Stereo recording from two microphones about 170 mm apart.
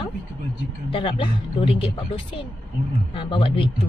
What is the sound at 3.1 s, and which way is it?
Speech, 30° left (ahead or behind).